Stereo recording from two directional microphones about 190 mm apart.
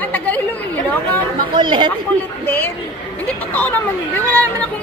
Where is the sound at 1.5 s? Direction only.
25° right (ahead or behind).